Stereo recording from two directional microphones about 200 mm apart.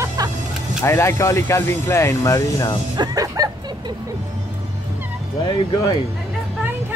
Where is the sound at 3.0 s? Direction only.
20° right (ahead or behind).